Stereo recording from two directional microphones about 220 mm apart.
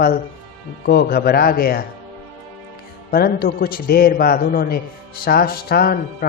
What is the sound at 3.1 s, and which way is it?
A man's voice, 45° left (ahead or behind).